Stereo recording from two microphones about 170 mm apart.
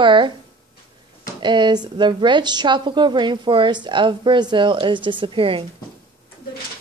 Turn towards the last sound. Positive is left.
turn(degrees=-30)  # may be behind; listen again after turning